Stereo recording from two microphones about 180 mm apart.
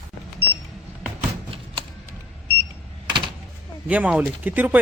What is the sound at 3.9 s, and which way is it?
Speech, 5° right (ahead or behind).